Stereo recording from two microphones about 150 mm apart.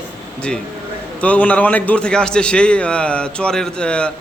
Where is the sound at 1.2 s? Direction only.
10° left (ahead or behind).